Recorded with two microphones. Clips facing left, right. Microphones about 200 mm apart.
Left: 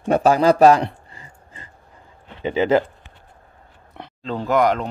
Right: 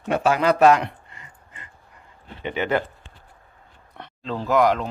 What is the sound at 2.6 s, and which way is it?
Speech, 25° left (ahead or behind).